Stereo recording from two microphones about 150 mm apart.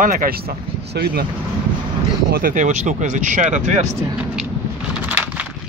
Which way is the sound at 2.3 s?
65° right (ahead or behind).